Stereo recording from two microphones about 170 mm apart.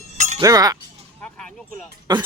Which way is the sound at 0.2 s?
45° right (ahead or behind).